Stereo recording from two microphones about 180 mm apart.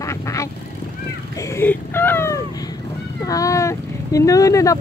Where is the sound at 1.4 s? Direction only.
15° left (ahead or behind).